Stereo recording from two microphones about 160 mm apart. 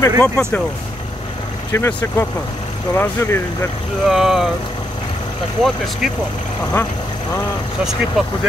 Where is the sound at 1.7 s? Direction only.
15° left (ahead or behind).